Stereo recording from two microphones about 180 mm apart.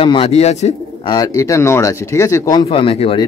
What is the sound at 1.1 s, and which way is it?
Speech, 20° left (ahead or behind).